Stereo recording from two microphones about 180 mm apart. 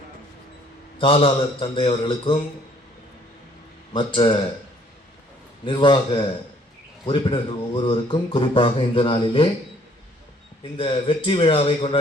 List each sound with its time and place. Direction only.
0.9 s speech: 30° left (ahead or behind)
3.9 s speech: 30° left (ahead or behind)
5.6 s speech: 25° left (ahead or behind)
10.8 s speech: 30° left (ahead or behind)